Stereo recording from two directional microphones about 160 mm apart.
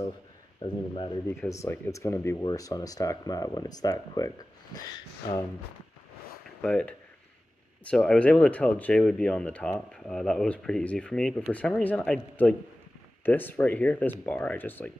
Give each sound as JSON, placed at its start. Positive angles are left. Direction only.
{"t": 0.6, "sound": "speech", "side_deg": 30}
{"t": 1.5, "sound": "speech", "side_deg": 20}
{"t": 6.6, "sound": "speech", "side_deg": 5}